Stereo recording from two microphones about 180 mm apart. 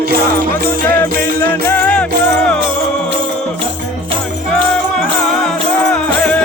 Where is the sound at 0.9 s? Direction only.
10° left (ahead or behind).